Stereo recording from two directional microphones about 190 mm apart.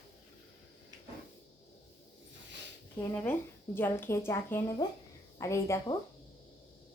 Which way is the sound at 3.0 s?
10° left (ahead or behind).